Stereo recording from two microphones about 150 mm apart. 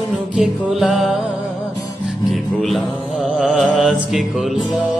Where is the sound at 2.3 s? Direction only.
Centre (ahead or behind).